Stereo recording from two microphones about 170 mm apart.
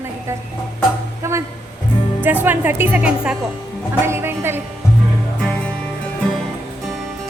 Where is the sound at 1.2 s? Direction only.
15° right (ahead or behind).